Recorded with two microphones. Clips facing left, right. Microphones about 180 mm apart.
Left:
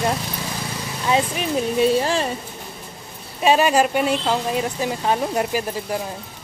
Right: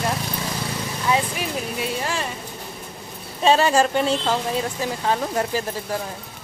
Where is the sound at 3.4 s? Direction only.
15° left (ahead or behind).